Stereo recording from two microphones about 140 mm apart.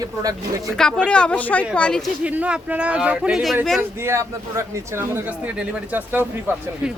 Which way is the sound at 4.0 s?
20° right (ahead or behind).